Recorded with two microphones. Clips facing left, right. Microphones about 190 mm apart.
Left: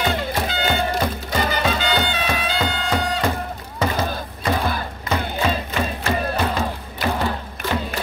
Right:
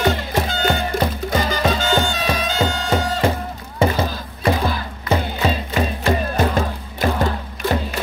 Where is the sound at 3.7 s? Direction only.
30° right (ahead or behind).